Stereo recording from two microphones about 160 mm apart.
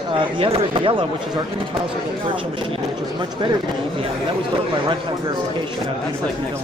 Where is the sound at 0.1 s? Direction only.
35° right (ahead or behind).